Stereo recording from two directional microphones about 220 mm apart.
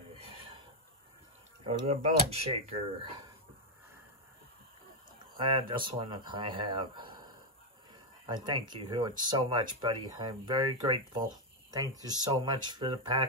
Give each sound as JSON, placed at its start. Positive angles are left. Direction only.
{"t": 0.2, "sound": "a sound", "side_deg": -25}
{"t": 1.7, "sound": "speech", "side_deg": -30}
{"t": 5.2, "sound": "speech", "side_deg": -20}